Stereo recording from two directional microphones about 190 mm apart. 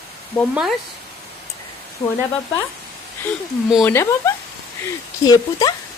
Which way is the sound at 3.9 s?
15° left (ahead or behind).